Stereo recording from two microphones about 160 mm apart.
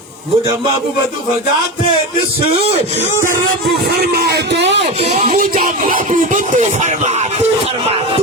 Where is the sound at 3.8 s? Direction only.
90° right.